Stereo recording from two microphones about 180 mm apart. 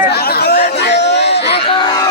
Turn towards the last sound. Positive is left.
turn(degrees=70)  # may be behind; listen again after turning